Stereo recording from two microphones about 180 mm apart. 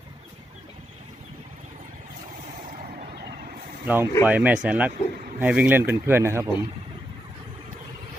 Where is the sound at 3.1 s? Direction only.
65° right (ahead or behind).